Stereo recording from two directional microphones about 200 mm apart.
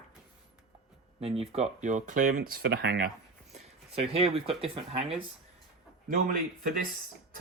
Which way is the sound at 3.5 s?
30° right (ahead or behind).